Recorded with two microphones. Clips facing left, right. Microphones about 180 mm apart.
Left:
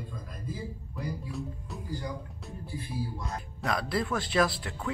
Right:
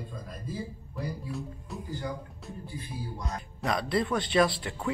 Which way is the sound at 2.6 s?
20° right (ahead or behind).